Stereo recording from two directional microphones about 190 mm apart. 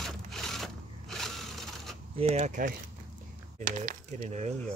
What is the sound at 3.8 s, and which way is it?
Speech, 40° right (ahead or behind).